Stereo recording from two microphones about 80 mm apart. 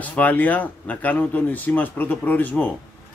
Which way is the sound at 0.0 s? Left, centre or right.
Centre.